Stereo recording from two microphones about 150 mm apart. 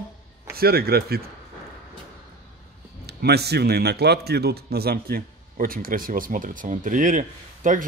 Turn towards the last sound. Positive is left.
turn(degrees=-60)  # may be behind; listen again after turning